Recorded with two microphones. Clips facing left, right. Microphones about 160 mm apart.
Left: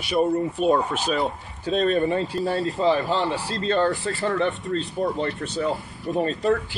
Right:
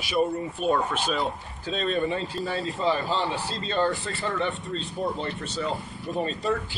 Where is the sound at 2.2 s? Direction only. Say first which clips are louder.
Left 5 dB; centre (ahead or behind).